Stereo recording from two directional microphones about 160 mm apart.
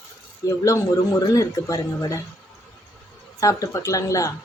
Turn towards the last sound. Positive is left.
turn(degrees=20)  # may be behind; listen again after turning